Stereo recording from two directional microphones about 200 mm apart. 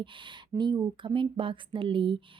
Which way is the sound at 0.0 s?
25° right (ahead or behind).